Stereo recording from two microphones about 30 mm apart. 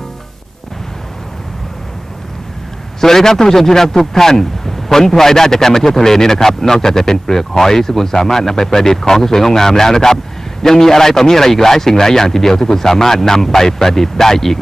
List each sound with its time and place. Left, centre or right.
3.0 s a man's voice: centre